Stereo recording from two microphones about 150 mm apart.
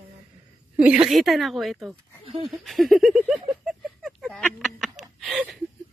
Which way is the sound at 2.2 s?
40° right (ahead or behind).